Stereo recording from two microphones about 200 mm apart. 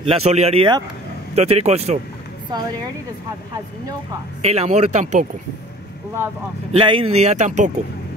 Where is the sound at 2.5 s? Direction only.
20° right (ahead or behind).